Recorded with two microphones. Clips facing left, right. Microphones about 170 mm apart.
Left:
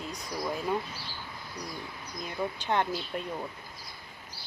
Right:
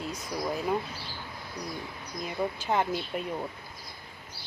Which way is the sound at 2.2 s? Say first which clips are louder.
Right 2 dB; 5° right (ahead or behind).